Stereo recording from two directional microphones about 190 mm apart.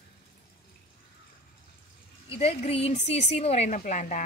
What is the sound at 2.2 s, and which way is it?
Speech, 30° left (ahead or behind).